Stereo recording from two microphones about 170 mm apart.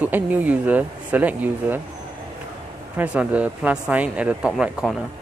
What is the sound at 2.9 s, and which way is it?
Speech, 5° right (ahead or behind).